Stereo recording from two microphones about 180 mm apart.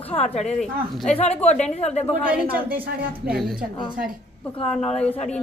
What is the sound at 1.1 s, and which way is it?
A woman's voice, 35° left (ahead or behind).